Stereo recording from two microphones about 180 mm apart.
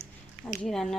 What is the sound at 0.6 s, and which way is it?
Speech, 5° left (ahead or behind).